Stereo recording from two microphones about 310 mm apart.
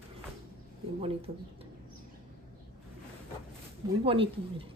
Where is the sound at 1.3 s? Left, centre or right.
Right.